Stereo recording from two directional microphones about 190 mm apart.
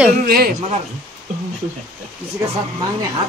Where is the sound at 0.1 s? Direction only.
50° right (ahead or behind).